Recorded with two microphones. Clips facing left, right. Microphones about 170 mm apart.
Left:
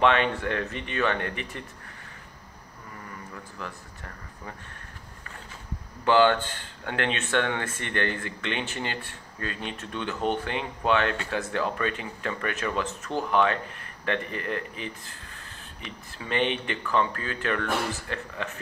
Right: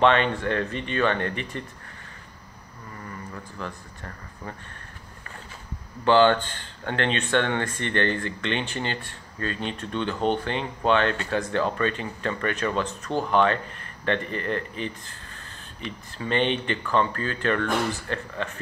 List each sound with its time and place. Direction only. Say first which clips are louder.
0.0 s speech: right 2 dB; 5° left (ahead or behind)
6.0 s speech: right 2 dB; 5° left (ahead or behind)
16.2 s speech: right 3 dB; 5° left (ahead or behind)